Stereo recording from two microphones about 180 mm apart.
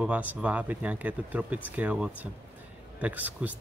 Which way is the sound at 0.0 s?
10° right (ahead or behind).